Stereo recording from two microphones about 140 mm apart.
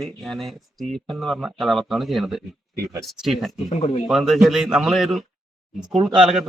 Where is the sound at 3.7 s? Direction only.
45° left (ahead or behind).